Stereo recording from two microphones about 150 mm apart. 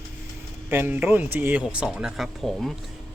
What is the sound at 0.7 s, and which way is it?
Speech, 15° right (ahead or behind).